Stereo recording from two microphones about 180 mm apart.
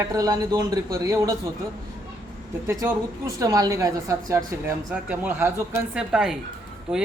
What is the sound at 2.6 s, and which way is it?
A woman's voice, 15° right (ahead or behind).